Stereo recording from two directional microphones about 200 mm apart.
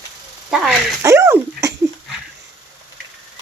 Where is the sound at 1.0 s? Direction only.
15° right (ahead or behind).